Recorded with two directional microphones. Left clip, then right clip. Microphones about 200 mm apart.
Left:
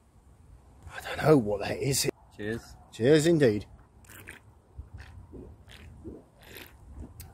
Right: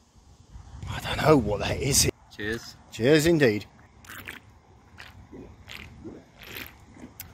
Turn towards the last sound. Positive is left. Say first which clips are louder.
# right 8 dB
turn(degrees=-15)  # may be behind; listen again after turning